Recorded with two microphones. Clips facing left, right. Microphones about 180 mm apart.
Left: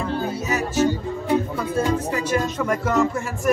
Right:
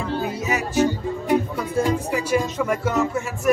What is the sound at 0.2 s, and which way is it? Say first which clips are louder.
Music: even; 15° right (ahead or behind).